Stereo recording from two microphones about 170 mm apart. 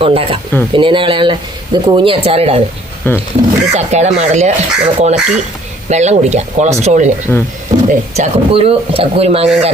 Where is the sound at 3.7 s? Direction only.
40° right (ahead or behind).